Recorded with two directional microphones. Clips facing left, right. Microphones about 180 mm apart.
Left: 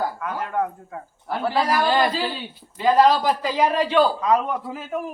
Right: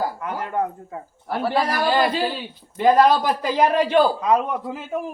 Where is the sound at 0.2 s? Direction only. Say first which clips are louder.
Even; 20° right (ahead or behind).